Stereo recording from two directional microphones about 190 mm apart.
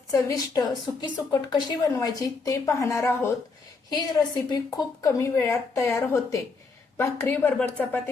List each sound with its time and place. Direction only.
0.1 s a woman's voice: 20° left (ahead or behind)